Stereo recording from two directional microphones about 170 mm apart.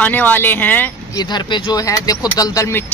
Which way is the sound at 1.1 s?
25° left (ahead or behind).